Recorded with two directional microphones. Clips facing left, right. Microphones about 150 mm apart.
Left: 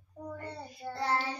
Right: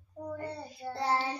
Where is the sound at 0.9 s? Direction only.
25° right (ahead or behind).